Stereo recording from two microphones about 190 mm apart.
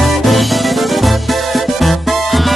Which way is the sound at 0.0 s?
Centre (ahead or behind).